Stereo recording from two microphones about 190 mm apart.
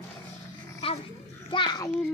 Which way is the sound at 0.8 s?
30° left (ahead or behind).